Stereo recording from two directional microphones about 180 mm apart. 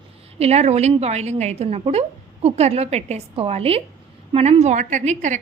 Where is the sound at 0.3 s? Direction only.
35° right (ahead or behind).